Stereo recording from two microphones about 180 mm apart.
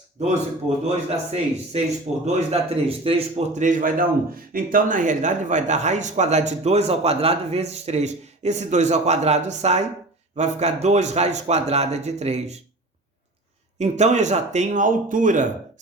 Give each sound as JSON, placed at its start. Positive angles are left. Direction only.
{"t": 0.9, "sound": "speech", "side_deg": -35}
{"t": 13.7, "sound": "speech", "side_deg": -40}